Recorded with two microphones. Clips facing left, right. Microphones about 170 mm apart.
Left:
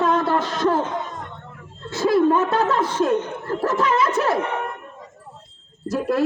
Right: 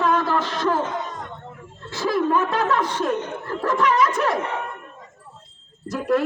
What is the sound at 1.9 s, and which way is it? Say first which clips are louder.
A man's voice: left 4 dB; 25° left (ahead or behind).